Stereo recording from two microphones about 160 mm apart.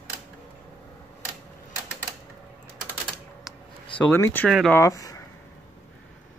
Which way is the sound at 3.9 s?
15° left (ahead or behind).